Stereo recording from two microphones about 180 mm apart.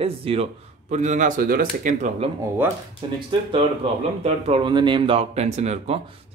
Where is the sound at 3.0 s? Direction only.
25° right (ahead or behind).